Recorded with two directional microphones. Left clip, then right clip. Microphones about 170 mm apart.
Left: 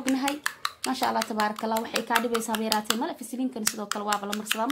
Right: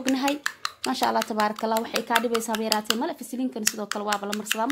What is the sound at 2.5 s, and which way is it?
Speech, 40° right (ahead or behind).